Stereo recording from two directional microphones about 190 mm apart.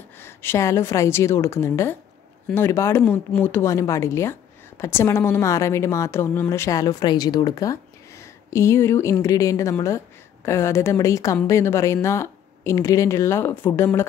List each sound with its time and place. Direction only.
0.2 s a woman's voice: 10° left (ahead or behind)